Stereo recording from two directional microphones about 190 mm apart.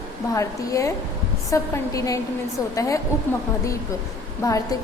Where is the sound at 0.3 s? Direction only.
15° left (ahead or behind).